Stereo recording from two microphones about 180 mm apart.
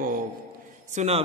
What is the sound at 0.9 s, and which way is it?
Speech, 35° right (ahead or behind).